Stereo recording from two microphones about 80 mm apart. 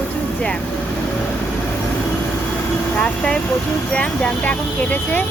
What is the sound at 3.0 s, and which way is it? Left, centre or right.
Speech, centre.